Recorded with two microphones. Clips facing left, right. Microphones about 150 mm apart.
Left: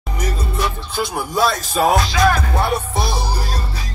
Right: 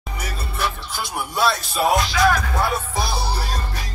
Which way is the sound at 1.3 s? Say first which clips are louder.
Left 2 dB; 45° left (ahead or behind).